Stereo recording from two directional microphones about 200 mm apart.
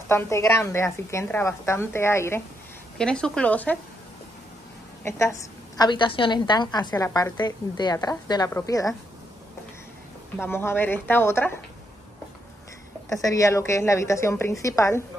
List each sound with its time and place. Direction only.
0.1 s a woman's voice: 15° left (ahead or behind)
5.0 s a woman's voice: 15° left (ahead or behind)
10.3 s a woman's voice: 10° left (ahead or behind)
13.1 s a woman's voice: 15° left (ahead or behind)